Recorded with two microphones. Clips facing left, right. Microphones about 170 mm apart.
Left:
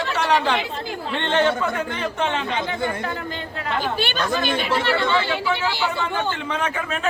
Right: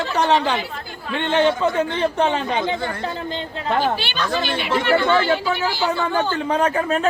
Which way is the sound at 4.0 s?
50° left (ahead or behind).